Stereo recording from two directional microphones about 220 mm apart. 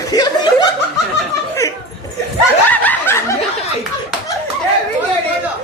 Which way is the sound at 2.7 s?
10° left (ahead or behind).